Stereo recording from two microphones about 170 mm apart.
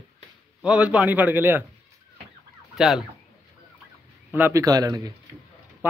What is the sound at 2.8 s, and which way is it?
Speech, centre (ahead or behind).